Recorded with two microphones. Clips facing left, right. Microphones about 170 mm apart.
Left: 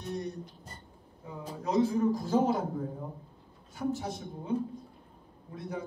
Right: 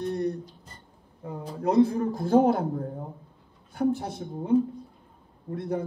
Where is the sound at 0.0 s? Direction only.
55° right (ahead or behind).